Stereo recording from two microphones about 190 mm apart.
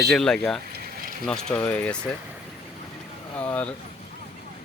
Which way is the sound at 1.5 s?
5° left (ahead or behind).